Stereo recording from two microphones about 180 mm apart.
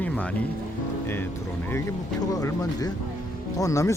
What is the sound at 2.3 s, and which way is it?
Speech, 20° left (ahead or behind).